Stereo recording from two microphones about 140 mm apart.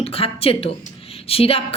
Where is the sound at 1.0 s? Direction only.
45° left (ahead or behind).